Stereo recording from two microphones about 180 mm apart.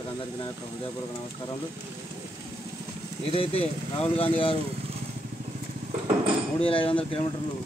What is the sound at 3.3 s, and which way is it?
Speech, 30° left (ahead or behind).